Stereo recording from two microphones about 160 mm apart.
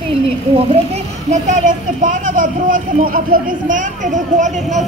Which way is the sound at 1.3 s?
50° right (ahead or behind).